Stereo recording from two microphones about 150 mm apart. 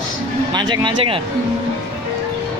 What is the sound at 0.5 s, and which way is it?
Speech, 30° right (ahead or behind).